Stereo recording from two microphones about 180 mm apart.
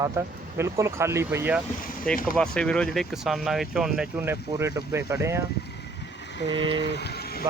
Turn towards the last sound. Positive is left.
turn(degrees=60)  # may be behind; listen again after turning